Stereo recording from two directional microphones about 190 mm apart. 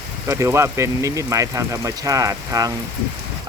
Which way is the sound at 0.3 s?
15° right (ahead or behind).